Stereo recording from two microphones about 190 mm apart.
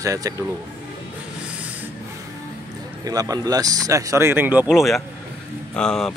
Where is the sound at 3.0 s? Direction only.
20° right (ahead or behind).